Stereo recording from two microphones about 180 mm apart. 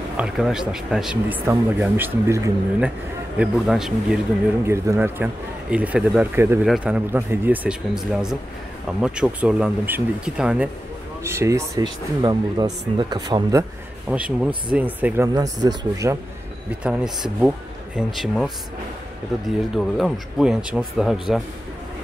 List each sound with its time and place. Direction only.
0.2 s a man's voice: 5° right (ahead or behind)
3.3 s speech: centre (ahead or behind)
4.6 s a man's voice: 15° right (ahead or behind)
14.0 s a man's voice: 5° right (ahead or behind)
15.2 s speech: 20° right (ahead or behind)
16.8 s speech: 5° right (ahead or behind)
19.7 s speech: centre (ahead or behind)